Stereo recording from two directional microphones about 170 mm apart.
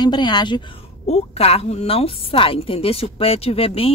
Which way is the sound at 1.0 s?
40° left (ahead or behind).